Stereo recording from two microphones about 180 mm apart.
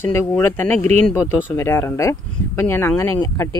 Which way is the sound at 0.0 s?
15° left (ahead or behind).